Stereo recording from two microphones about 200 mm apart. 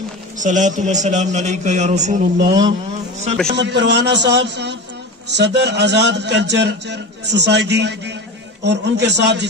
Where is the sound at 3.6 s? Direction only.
60° right (ahead or behind).